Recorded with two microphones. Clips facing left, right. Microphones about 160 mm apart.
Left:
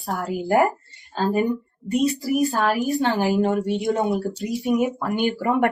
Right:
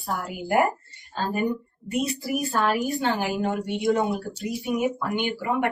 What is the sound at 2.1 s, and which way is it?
Speech, 40° left (ahead or behind).